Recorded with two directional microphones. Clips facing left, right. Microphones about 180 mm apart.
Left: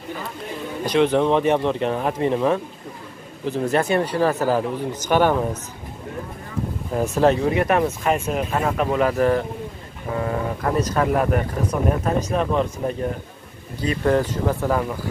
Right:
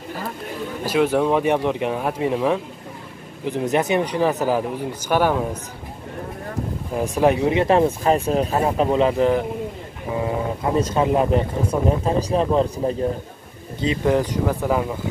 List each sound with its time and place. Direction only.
0.8 s speech: 5° right (ahead or behind)
7.2 s speech: 15° right (ahead or behind)
10.8 s speech: 25° right (ahead or behind)
14.0 s speech: 15° right (ahead or behind)